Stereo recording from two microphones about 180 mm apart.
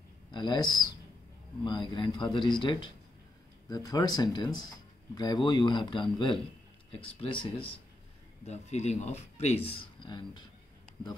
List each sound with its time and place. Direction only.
0.3 s speech: 25° left (ahead or behind)